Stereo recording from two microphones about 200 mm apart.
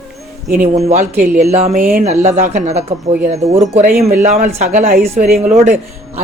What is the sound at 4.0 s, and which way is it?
Speech, 45° right (ahead or behind).